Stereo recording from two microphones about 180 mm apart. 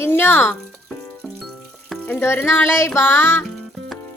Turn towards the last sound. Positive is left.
turn(degrees=15)  # may be behind; listen again after turning